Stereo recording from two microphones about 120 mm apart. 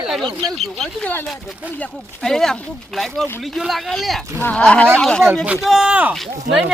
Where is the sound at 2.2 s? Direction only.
5° left (ahead or behind).